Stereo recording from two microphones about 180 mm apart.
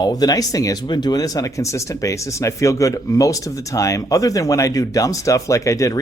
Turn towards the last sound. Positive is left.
turn(degrees=15)  # may be behind; listen again after turning